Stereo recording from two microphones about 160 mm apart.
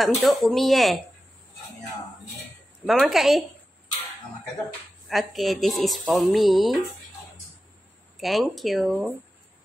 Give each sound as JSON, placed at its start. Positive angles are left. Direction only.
{"t": 0.0, "sound": "speech", "side_deg": 0}
{"t": 2.9, "sound": "speech", "side_deg": 0}
{"t": 5.0, "sound": "speech", "side_deg": 0}
{"t": 8.2, "sound": "speech", "side_deg": 0}